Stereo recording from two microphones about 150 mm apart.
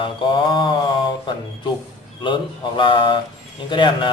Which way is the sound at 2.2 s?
35° left (ahead or behind).